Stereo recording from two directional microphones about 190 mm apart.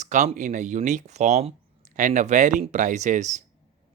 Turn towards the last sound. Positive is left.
turn(degrees=-40)  # may be behind; listen again after turning